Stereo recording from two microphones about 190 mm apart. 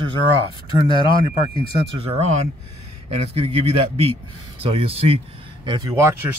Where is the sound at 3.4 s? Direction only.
30° right (ahead or behind).